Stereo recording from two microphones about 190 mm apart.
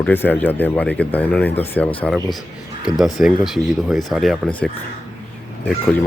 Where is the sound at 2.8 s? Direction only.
Centre (ahead or behind).